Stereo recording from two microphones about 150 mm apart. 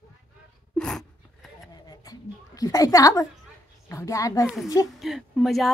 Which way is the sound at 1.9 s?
25° left (ahead or behind).